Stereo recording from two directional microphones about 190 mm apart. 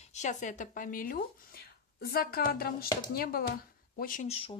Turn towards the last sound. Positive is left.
turn(degrees=30)  # may be behind; listen again after turning